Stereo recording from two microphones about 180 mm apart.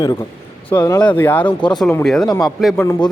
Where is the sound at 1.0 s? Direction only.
10° left (ahead or behind).